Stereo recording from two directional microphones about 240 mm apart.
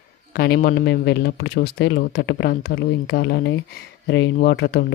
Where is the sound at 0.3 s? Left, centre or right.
Left.